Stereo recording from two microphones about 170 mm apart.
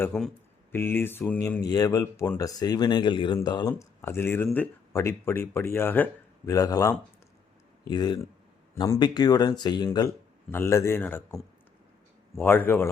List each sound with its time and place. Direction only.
0.0 s speech: 5° left (ahead or behind)
12.4 s speech: 10° left (ahead or behind)